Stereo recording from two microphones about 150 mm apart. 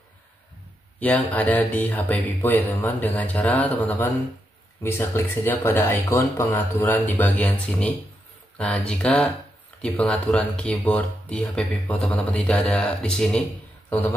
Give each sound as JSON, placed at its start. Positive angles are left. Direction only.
{"t": 0.9, "sound": "speech", "side_deg": 10}